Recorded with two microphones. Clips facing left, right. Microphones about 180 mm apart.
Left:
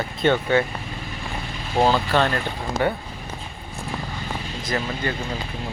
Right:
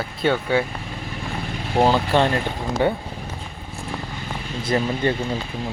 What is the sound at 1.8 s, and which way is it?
Speech, 15° right (ahead or behind).